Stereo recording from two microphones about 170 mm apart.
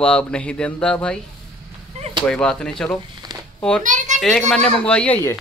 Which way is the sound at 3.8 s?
45° right (ahead or behind).